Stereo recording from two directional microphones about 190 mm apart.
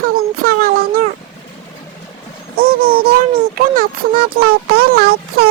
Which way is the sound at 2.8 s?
50° right (ahead or behind).